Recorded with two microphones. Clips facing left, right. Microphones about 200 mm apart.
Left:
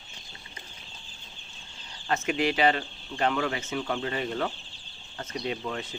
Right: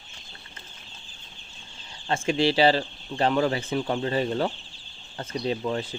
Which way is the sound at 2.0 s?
30° right (ahead or behind).